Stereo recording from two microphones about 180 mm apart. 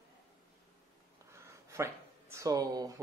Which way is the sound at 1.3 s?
15° right (ahead or behind).